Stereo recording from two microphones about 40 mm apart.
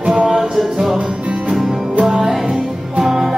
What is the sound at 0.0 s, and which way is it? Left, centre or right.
Music, right.